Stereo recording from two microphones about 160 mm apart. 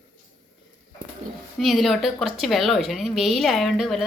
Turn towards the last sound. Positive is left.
turn(degrees=0)  # may be behind; listen again after turning